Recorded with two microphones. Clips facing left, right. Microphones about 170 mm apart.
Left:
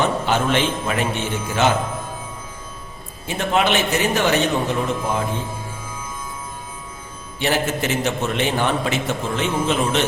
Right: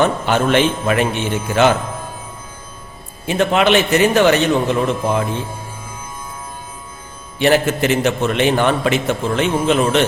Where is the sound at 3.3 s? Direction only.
75° right (ahead or behind).